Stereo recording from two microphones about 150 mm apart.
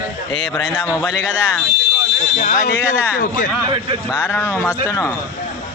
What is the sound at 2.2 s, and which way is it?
Speech, 55° left (ahead or behind).